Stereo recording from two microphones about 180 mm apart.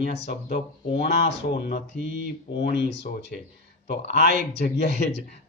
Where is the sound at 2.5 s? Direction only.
70° left (ahead or behind).